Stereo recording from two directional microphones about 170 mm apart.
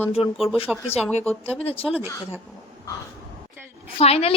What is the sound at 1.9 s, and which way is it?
Speech, 10° right (ahead or behind).